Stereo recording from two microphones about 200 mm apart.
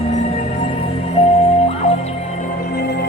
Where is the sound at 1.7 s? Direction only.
35° left (ahead or behind); by 3.0 s 50° left (ahead or behind).